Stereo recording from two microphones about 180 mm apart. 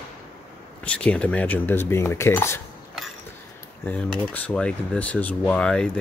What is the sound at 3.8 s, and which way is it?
Speech, 10° left (ahead or behind).